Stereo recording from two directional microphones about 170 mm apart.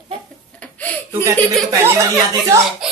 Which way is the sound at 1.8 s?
15° right (ahead or behind).